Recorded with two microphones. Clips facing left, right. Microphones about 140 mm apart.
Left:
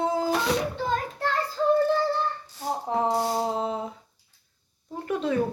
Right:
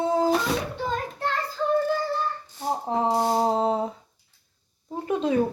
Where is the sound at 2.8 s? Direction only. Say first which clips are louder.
Right 1 dB; 25° right (ahead or behind).